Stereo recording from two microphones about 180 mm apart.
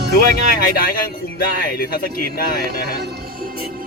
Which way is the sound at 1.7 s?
55° left (ahead or behind).